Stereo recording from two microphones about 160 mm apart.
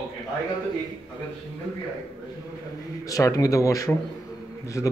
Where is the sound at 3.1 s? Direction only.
20° left (ahead or behind).